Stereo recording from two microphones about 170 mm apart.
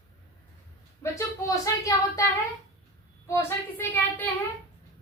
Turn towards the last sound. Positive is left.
turn(degrees=15)  # may be behind; listen again after turning